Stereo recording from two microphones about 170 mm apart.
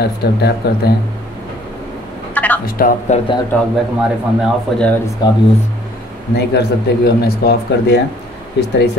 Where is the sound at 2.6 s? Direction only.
60° left (ahead or behind).